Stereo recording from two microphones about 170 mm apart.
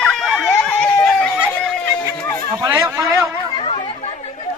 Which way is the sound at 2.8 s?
20° right (ahead or behind).